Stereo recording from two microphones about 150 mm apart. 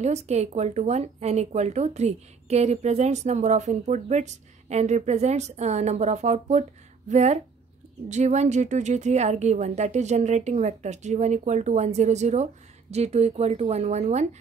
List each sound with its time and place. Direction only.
0.0 s speech: 45° right (ahead or behind)